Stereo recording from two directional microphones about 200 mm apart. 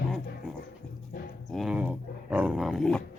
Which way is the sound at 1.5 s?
Centre (ahead or behind).